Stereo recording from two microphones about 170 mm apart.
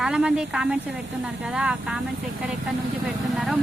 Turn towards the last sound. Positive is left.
turn(degrees=0)  # may be behind; listen again after turning